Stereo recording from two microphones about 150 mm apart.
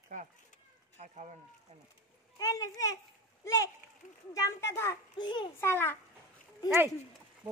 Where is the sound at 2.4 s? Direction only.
25° left (ahead or behind).